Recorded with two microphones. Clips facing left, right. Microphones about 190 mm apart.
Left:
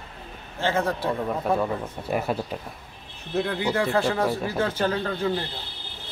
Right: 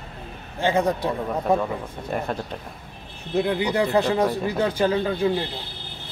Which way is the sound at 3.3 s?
15° right (ahead or behind).